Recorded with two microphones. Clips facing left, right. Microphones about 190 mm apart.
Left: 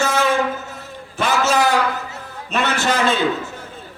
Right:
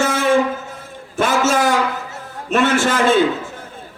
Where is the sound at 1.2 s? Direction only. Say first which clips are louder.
Right 2 dB; 50° right (ahead or behind).